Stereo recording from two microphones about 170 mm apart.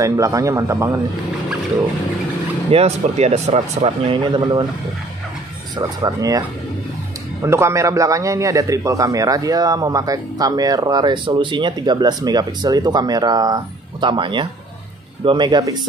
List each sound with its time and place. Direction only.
0.0 s a man's voice: 20° right (ahead or behind)
2.7 s speech: 40° right (ahead or behind)
5.8 s a man's voice: 20° right (ahead or behind)
7.4 s a man's voice: 15° right (ahead or behind)